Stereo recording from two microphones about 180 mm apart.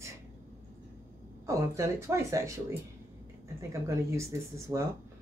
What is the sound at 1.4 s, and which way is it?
Speech, 15° right (ahead or behind).